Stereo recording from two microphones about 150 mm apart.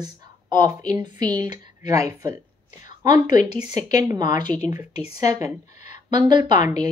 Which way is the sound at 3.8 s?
25° right (ahead or behind).